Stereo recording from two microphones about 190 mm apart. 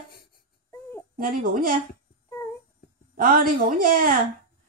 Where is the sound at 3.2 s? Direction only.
50° right (ahead or behind).